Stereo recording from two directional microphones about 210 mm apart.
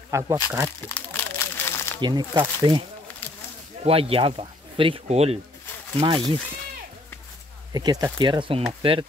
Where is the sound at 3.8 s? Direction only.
25° right (ahead or behind).